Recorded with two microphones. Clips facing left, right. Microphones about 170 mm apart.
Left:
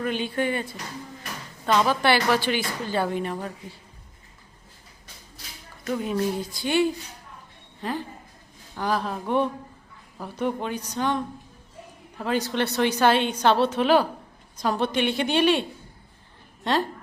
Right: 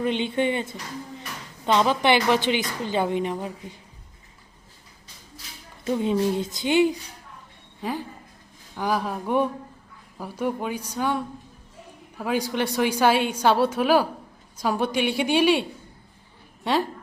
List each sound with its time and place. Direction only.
0.0 s a woman's voice: 20° right (ahead or behind)
5.8 s a woman's voice: 25° right (ahead or behind); by 15.6 s 10° right (ahead or behind)
16.7 s a woman's voice: 10° right (ahead or behind)